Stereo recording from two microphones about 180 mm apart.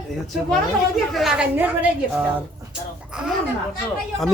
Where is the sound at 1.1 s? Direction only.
Centre (ahead or behind).